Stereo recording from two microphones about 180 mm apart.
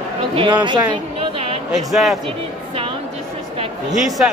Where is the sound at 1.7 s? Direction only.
Centre (ahead or behind).